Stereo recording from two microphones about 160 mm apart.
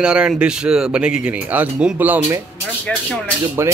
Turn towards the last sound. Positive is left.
turn(degrees=-15)  # may be behind; listen again after turning